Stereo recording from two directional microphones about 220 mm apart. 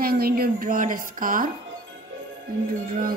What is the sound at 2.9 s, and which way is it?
Speech, 40° right (ahead or behind).